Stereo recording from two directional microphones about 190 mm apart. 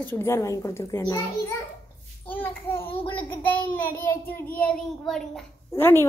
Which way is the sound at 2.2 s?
10° left (ahead or behind).